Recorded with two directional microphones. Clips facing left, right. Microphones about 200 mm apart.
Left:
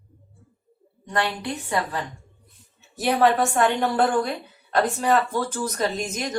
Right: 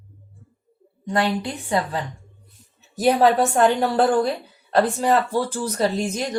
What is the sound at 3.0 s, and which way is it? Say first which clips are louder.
Speech: right 3 dB; 35° right (ahead or behind).